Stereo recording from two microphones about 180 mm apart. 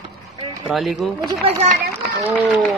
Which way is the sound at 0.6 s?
Centre (ahead or behind).